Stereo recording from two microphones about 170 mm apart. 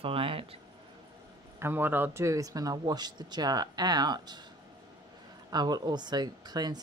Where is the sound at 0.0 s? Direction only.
35° right (ahead or behind).